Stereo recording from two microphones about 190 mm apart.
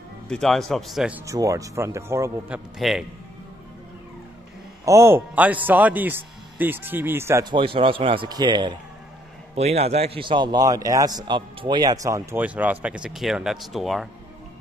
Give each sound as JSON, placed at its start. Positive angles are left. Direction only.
{"t": 0.3, "sound": "speech", "side_deg": 0}
{"t": 1.2, "sound": "a man's voice", "side_deg": -15}
{"t": 4.8, "sound": "a man's voice", "side_deg": -15}
{"t": 9.6, "sound": "a man's voice", "side_deg": -35}